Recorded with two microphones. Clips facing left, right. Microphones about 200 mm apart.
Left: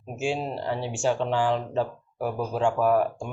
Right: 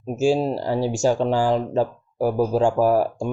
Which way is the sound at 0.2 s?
40° right (ahead or behind).